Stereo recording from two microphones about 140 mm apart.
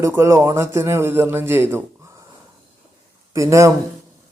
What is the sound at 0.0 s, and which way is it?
A man's voice, 20° right (ahead or behind).